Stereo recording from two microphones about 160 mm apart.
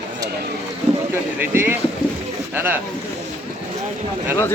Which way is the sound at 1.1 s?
15° right (ahead or behind).